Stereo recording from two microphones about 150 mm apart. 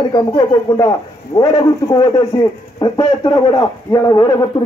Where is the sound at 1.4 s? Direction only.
25° left (ahead or behind).